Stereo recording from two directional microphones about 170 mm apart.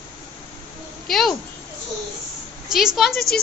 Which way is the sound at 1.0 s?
Centre (ahead or behind).